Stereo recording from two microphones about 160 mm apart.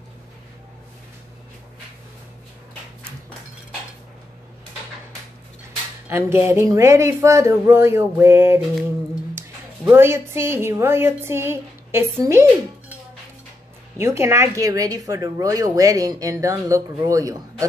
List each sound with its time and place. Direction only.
6.0 s a woman's voice: 15° right (ahead or behind)
9.8 s a woman's voice: 15° right (ahead or behind)
13.9 s a woman's voice: 15° right (ahead or behind)